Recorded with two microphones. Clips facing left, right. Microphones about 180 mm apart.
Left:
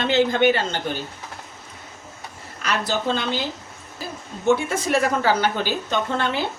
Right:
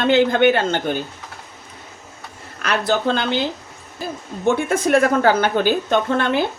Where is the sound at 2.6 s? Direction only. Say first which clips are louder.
Right 4 dB; 60° right (ahead or behind).